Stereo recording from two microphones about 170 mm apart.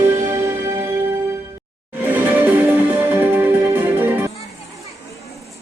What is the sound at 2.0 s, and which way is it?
Music, 10° right (ahead or behind).